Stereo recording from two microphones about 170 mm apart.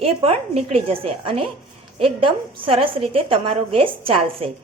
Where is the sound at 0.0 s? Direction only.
35° right (ahead or behind).